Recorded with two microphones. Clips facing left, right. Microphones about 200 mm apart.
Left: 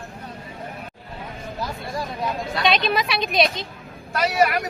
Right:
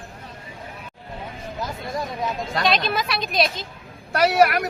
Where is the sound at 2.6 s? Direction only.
Centre (ahead or behind).